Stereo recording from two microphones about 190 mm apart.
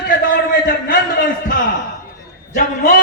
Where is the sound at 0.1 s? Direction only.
45° left (ahead or behind).